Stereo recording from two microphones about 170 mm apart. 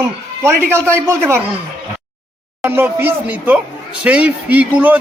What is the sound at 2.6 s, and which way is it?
A man's voice, 15° right (ahead or behind).